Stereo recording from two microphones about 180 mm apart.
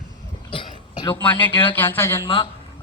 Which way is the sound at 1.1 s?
10° left (ahead or behind).